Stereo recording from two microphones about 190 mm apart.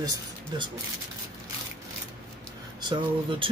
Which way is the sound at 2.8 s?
25° right (ahead or behind).